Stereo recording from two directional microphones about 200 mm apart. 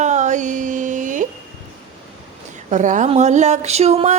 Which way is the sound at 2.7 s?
40° right (ahead or behind).